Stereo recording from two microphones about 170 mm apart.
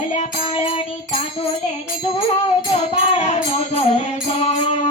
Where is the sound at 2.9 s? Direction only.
40° left (ahead or behind).